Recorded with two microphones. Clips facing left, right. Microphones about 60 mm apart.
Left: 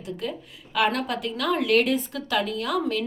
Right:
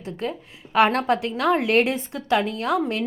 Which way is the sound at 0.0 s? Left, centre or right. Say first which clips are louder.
Right 2 dB; right.